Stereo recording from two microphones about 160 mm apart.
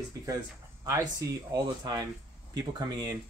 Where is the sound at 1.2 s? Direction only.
20° right (ahead or behind).